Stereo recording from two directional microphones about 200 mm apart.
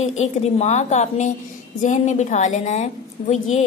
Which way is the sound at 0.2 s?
35° left (ahead or behind).